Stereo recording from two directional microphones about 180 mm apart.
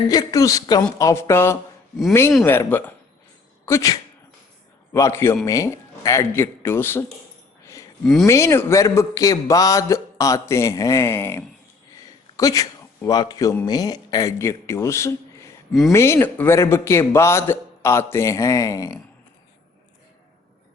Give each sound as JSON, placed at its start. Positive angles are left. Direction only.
{"t": 0.1, "sound": "a woman's voice", "side_deg": 20}
{"t": 4.9, "sound": "a man's voice", "side_deg": 15}
{"t": 8.0, "sound": "speech", "side_deg": 0}
{"t": 8.3, "sound": "a man's voice", "side_deg": 15}